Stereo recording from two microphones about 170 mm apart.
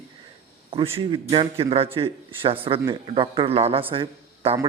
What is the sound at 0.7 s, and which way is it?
A man's voice, 30° right (ahead or behind).